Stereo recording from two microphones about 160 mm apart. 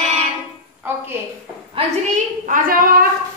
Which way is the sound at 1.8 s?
50° right (ahead or behind).